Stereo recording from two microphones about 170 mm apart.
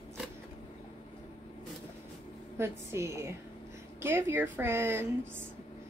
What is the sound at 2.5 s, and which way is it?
Speech, 15° right (ahead or behind).